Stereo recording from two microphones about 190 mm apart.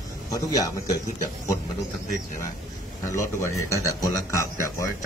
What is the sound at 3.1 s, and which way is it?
A man's voice, 15° left (ahead or behind).